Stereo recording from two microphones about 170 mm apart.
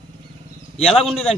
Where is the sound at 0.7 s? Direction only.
35° left (ahead or behind).